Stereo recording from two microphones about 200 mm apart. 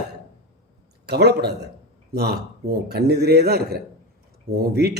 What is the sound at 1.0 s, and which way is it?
A man's voice, 55° right (ahead or behind).